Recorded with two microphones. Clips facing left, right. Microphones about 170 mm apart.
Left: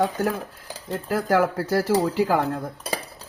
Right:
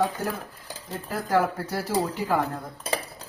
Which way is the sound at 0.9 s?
90° left.